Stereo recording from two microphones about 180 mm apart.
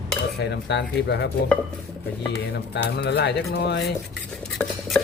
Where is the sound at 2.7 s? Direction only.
70° left (ahead or behind).